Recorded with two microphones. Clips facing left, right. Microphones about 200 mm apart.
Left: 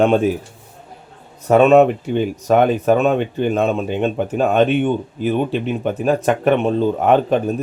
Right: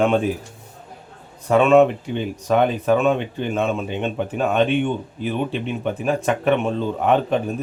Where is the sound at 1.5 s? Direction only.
40° left (ahead or behind).